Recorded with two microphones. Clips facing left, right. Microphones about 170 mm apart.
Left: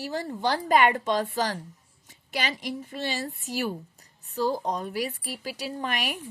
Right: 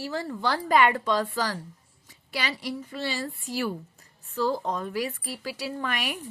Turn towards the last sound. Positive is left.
turn(degrees=20)  # may be behind; listen again after turning